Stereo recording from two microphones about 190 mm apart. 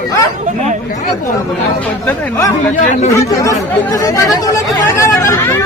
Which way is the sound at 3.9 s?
20° left (ahead or behind).